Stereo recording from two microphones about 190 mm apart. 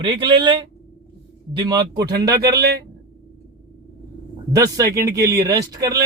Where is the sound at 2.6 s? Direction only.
60° right (ahead or behind).